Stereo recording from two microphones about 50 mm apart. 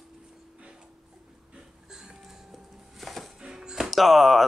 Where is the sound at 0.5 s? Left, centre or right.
Right.